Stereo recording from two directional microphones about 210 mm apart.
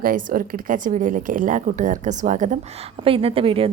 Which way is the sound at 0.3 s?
40° right (ahead or behind).